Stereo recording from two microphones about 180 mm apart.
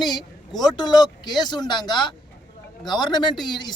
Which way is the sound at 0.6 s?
25° left (ahead or behind).